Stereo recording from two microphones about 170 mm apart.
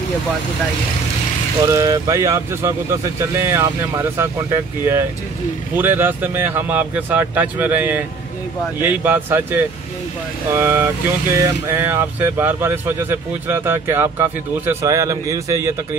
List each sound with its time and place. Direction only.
1.7 s speech: 20° right (ahead or behind)